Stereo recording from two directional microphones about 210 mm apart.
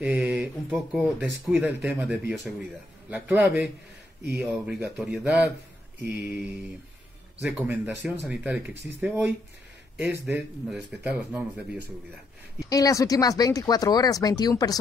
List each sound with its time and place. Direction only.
0.0 s speech: 5° right (ahead or behind)
12.5 s speech: 15° left (ahead or behind)